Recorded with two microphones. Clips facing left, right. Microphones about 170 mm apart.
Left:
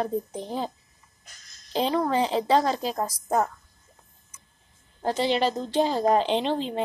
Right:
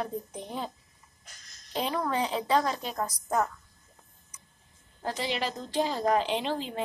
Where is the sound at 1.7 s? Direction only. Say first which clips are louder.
Left 6 dB; 30° left (ahead or behind).